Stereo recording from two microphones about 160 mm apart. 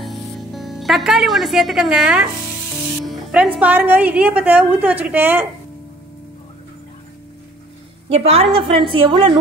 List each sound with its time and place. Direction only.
0.0 s music: centre (ahead or behind)
3.1 s a woman's voice: 5° right (ahead or behind)
8.1 s a woman's voice: 40° right (ahead or behind)